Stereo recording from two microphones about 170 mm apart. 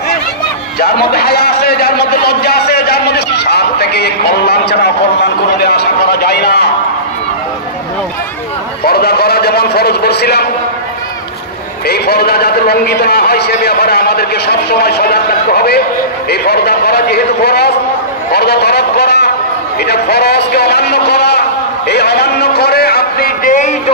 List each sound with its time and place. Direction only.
0.7 s a sound: 65° left (ahead or behind)
8.8 s a man's voice: 65° left (ahead or behind)
11.9 s a man's voice: 70° left (ahead or behind); by 23.7 s 50° left (ahead or behind)